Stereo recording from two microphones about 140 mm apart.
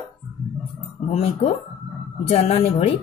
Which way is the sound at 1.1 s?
50° left (ahead or behind).